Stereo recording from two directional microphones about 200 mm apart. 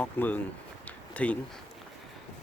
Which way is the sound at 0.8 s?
5° left (ahead or behind).